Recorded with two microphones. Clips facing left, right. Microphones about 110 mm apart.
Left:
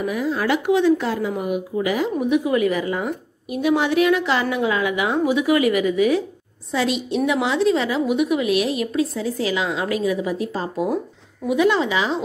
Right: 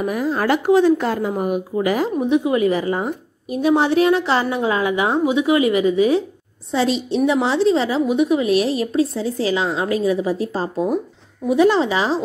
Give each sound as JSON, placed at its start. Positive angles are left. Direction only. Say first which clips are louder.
{"t": 0.0, "sound": "a woman's voice", "louder": "right 2 dB", "side_deg": -45}
{"t": 2.1, "sound": "a woman's voice", "louder": "even", "side_deg": -30}